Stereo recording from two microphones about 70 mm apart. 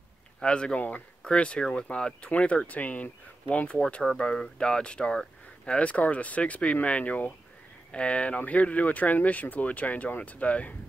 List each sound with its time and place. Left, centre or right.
0.4 s speech: centre
3.8 s speech: centre